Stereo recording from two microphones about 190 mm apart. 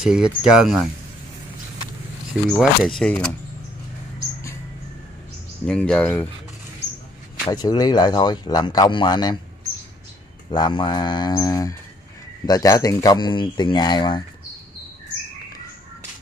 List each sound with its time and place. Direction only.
0.0 s speech: 5° right (ahead or behind)
2.5 s speech: centre (ahead or behind)
5.7 s speech: 5° left (ahead or behind)
7.4 s speech: 20° left (ahead or behind)
10.5 s speech: 25° left (ahead or behind)